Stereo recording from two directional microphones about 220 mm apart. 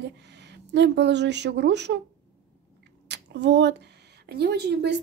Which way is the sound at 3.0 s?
50° right (ahead or behind).